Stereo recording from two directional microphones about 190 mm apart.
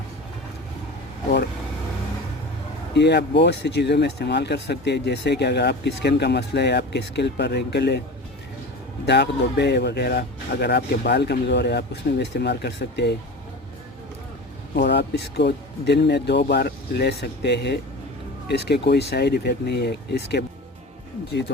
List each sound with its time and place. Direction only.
2.9 s speech: 60° left (ahead or behind)
9.0 s speech: 65° left (ahead or behind)
14.8 s speech: 60° left (ahead or behind)